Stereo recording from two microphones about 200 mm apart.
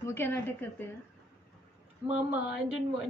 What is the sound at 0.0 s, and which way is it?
Speech, 10° left (ahead or behind).